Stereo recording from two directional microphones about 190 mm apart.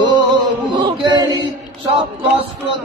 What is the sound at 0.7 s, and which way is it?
Chant, 25° right (ahead or behind).